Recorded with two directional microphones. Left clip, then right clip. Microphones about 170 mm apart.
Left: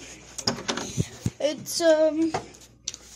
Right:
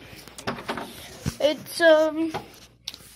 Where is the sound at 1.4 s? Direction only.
Centre (ahead or behind).